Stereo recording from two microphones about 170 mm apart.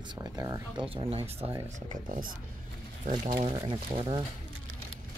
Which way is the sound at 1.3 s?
35° right (ahead or behind).